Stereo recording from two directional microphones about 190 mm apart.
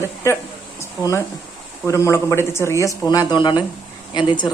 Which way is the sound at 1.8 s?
15° left (ahead or behind).